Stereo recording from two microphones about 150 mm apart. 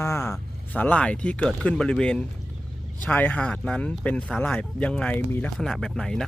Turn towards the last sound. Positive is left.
turn(degrees=5)  # may be behind; listen again after turning